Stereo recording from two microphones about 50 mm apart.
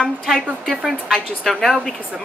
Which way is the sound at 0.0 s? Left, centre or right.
Centre.